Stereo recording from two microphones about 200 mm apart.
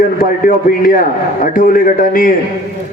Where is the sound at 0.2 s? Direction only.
45° left (ahead or behind).